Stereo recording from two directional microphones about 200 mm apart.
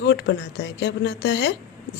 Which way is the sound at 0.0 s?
60° left (ahead or behind).